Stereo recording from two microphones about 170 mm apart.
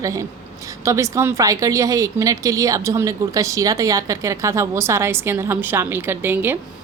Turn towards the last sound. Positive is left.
turn(degrees=-10)  # may be behind; listen again after turning